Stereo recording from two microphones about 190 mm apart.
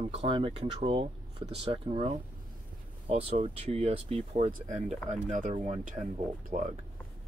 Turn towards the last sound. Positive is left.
turn(degrees=-40)  # may be behind; listen again after turning